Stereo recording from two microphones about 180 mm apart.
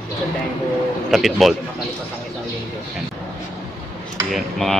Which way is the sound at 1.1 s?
Centre (ahead or behind).